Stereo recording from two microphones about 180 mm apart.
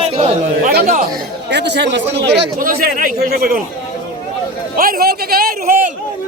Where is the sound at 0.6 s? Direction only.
60° right (ahead or behind).